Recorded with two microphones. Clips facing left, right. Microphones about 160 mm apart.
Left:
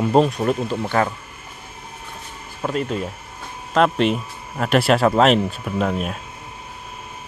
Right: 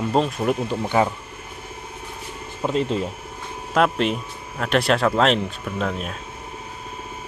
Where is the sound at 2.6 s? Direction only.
25° right (ahead or behind).